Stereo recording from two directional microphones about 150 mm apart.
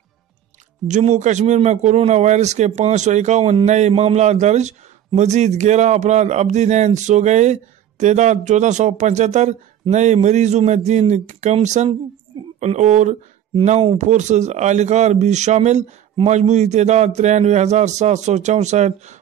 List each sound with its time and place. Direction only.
0.8 s a man's voice: 50° right (ahead or behind)